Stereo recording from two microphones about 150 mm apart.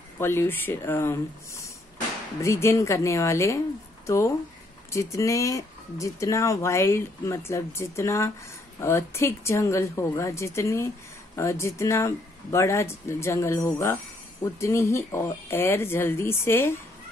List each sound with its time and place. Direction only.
0.2 s speech: 15° left (ahead or behind)